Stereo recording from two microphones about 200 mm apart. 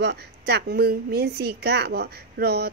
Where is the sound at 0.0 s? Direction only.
55° right (ahead or behind).